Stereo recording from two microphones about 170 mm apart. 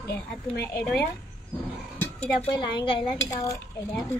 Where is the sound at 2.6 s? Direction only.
25° left (ahead or behind).